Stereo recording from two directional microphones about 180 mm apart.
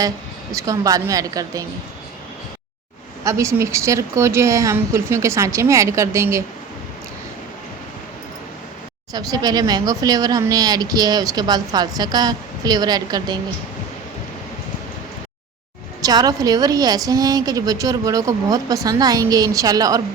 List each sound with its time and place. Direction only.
0.5 s speech: 20° right (ahead or behind)
3.2 s a woman's voice: 15° right (ahead or behind)
9.1 s speech: 20° right (ahead or behind)
16.0 s speech: 20° right (ahead or behind)